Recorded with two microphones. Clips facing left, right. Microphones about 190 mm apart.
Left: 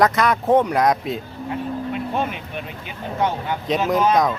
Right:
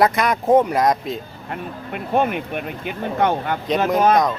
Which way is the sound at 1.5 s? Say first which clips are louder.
Left 4 dB; 55° right (ahead or behind).